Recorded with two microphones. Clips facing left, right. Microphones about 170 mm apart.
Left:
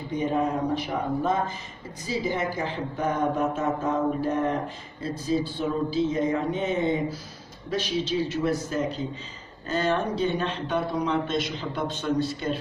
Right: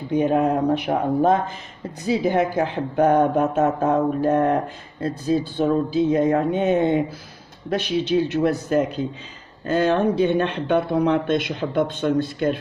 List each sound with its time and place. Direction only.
0.1 s speech: 65° right (ahead or behind)